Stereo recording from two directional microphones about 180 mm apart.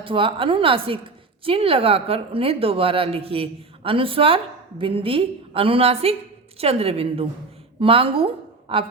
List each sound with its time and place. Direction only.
0.0 s a woman's voice: 30° right (ahead or behind)